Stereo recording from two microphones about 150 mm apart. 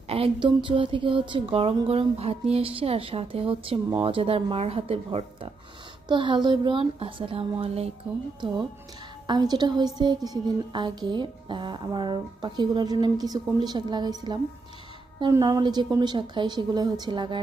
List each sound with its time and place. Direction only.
0.1 s a woman's voice: 35° right (ahead or behind)
9.3 s a woman's voice: 25° right (ahead or behind)